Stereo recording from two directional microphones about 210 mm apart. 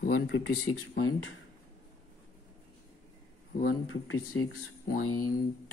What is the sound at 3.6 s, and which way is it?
Speech, 75° left (ahead or behind).